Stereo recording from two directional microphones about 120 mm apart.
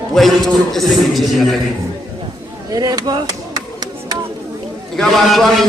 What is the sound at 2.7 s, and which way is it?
Speech, 35° right (ahead or behind).